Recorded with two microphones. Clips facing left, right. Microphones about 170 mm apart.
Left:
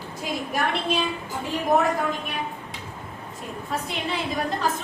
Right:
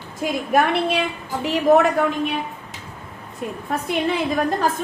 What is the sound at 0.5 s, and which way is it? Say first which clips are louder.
A woman's voice: right 7 dB; 65° right (ahead or behind).